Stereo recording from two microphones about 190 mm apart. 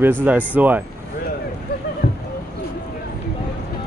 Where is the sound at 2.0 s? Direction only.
60° left (ahead or behind).